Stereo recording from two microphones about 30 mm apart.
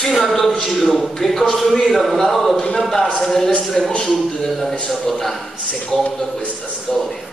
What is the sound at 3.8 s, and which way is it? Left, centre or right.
A woman's voice, centre.